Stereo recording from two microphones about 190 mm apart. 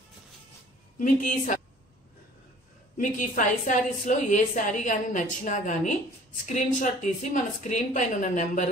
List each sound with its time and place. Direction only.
0.9 s a woman's voice: 45° left (ahead or behind)
3.0 s a woman's voice: 45° left (ahead or behind)